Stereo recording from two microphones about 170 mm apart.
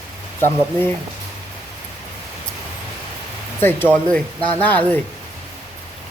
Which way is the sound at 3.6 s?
10° left (ahead or behind).